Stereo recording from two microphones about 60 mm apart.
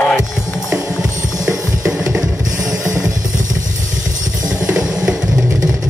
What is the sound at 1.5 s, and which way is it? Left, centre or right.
Music, centre.